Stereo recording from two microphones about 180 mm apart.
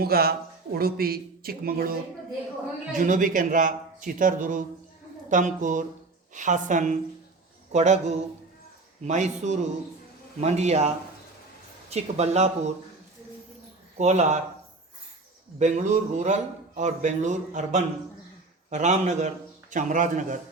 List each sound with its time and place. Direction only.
0.0 s a man's voice: 60° right (ahead or behind)
3.0 s a man's voice: 45° right (ahead or behind)
14.0 s speech: 40° right (ahead or behind)
15.5 s a man's voice: 40° right (ahead or behind)